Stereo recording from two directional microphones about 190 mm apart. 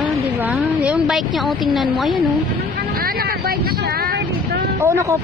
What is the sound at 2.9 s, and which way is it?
Vehicle, 50° right (ahead or behind).